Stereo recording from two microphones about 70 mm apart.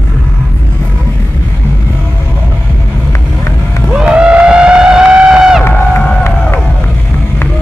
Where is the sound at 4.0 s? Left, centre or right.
Centre.